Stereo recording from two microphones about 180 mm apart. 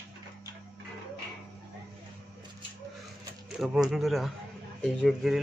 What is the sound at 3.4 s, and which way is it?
Speech, 5° right (ahead or behind).